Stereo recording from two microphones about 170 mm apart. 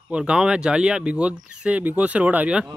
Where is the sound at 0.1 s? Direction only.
5° right (ahead or behind).